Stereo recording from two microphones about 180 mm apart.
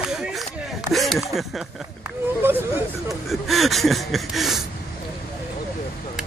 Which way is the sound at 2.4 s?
10° right (ahead or behind).